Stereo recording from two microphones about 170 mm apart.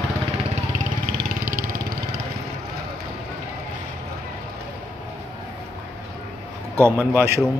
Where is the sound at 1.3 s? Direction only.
55° right (ahead or behind).